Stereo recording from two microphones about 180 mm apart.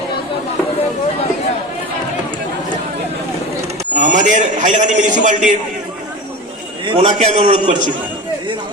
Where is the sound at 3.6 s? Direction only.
40° right (ahead or behind).